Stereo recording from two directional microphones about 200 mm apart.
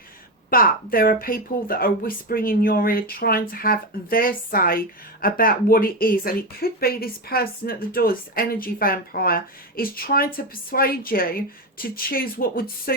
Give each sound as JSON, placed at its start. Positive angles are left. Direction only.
{"t": 0.5, "sound": "speech", "side_deg": 45}